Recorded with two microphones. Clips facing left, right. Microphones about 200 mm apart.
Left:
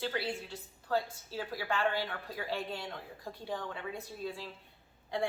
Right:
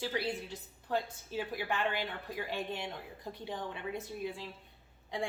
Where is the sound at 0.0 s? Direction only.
20° right (ahead or behind).